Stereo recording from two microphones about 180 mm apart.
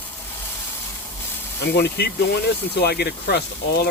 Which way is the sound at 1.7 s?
65° left (ahead or behind).